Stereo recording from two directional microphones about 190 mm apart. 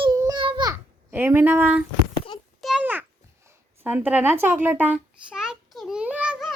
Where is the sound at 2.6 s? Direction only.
5° right (ahead or behind).